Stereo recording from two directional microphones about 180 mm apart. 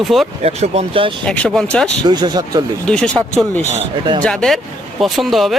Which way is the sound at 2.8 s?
5° left (ahead or behind).